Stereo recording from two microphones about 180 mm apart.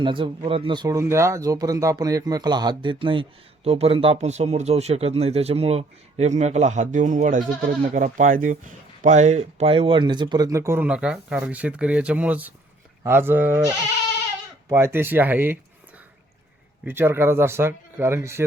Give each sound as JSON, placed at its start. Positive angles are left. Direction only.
{"t": 0.0, "sound": "speech", "side_deg": -30}
{"t": 16.8, "sound": "speech", "side_deg": -10}